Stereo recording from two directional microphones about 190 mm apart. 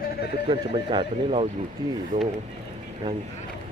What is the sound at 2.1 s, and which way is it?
Speech, 40° right (ahead or behind).